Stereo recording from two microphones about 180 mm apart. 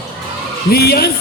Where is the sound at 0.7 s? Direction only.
60° left (ahead or behind).